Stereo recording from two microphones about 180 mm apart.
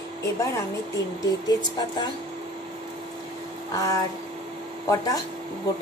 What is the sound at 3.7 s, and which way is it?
Speech, 20° left (ahead or behind).